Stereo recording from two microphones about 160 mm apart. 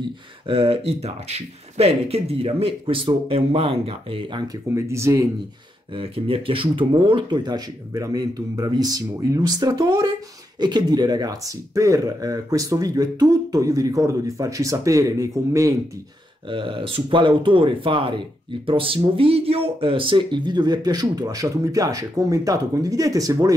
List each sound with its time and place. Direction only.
0.5 s speech: 35° right (ahead or behind)
4.6 s speech: 15° right (ahead or behind)
5.9 s speech: 35° right (ahead or behind); by 15.7 s 20° right (ahead or behind)
16.4 s speech: 30° right (ahead or behind)